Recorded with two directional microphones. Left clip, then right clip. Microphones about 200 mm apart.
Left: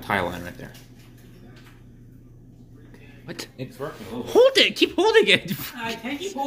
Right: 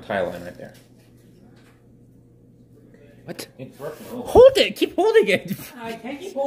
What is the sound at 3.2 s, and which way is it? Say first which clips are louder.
Speech: even; 20° right (ahead or behind).